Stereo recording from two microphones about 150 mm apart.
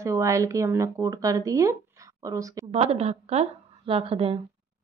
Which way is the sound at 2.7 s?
45° right (ahead or behind).